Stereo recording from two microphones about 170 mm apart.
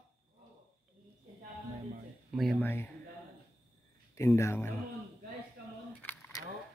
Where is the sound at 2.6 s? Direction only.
15° left (ahead or behind).